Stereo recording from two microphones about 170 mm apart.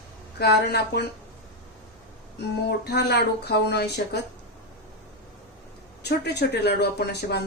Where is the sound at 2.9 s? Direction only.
75° left (ahead or behind).